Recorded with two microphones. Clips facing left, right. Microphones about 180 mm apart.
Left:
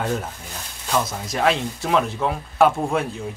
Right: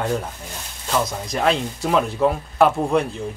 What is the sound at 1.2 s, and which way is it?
Speech, centre (ahead or behind).